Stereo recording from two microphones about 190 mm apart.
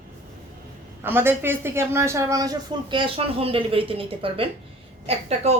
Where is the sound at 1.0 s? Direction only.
10° right (ahead or behind).